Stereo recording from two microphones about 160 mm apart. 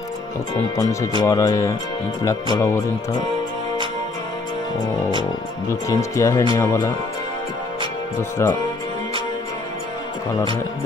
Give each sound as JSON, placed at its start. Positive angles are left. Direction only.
{"t": 1.2, "sound": "speech", "side_deg": 25}
{"t": 5.7, "sound": "speech", "side_deg": 20}
{"t": 8.2, "sound": "speech", "side_deg": 15}